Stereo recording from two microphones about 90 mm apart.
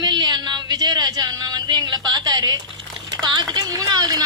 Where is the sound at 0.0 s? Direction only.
50° right (ahead or behind).